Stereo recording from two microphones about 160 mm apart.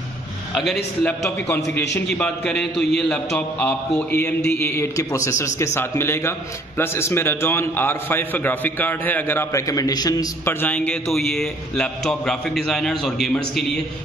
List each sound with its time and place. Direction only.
1.0 s a man's voice: 15° left (ahead or behind)